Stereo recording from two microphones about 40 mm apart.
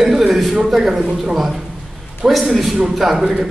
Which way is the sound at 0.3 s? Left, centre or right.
Centre.